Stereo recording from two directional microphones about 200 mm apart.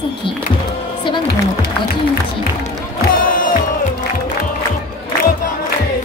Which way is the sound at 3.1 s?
45° left (ahead or behind).